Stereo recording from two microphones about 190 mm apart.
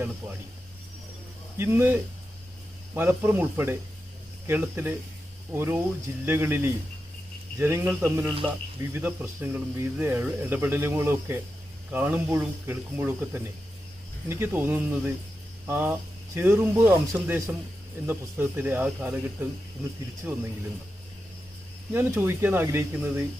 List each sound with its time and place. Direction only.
1.5 s speech: 10° right (ahead or behind)
20.3 s speech: 15° right (ahead or behind)
21.9 s speech: 10° right (ahead or behind)